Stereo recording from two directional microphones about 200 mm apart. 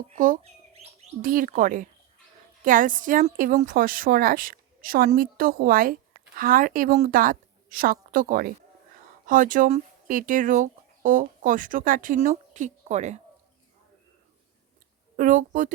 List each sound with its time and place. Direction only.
0.1 s a woman's voice: 40° right (ahead or behind)
15.1 s speech: 40° right (ahead or behind)